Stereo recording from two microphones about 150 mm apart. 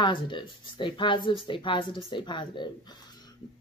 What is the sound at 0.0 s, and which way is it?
Speech, 30° left (ahead or behind).